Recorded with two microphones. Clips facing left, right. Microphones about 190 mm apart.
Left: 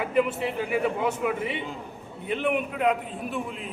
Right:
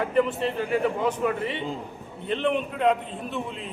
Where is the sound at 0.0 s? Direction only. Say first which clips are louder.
Right 1 dB; 10° left (ahead or behind).